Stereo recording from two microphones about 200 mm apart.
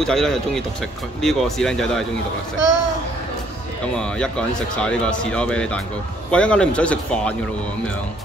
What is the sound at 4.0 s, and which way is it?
Speech, 5° left (ahead or behind).